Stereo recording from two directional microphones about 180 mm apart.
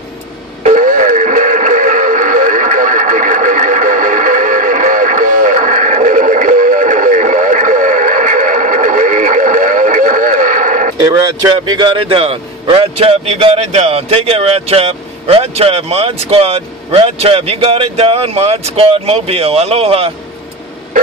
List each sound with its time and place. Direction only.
0.7 s music: 45° right (ahead or behind)
11.1 s a man's voice: 20° right (ahead or behind)